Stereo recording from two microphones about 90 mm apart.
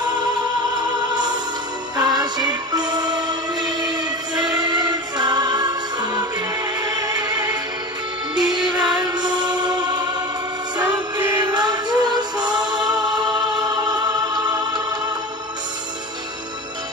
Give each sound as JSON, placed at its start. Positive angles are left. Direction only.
{"t": 0.0, "sound": "music", "side_deg": -55}
{"t": 11.5, "sound": "music", "side_deg": -55}